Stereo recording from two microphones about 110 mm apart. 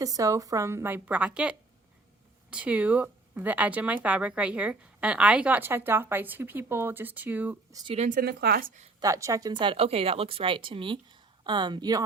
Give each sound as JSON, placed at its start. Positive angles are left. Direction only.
{"t": 0.0, "sound": "a woman's voice", "side_deg": -30}
{"t": 7.7, "sound": "speech", "side_deg": -30}
{"t": 9.0, "sound": "speech", "side_deg": -30}